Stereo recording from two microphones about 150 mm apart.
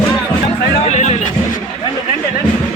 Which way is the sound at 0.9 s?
50° left (ahead or behind).